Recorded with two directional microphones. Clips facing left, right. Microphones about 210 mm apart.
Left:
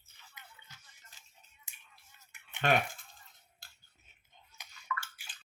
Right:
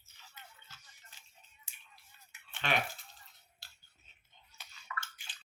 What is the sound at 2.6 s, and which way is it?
Speech, 50° left (ahead or behind).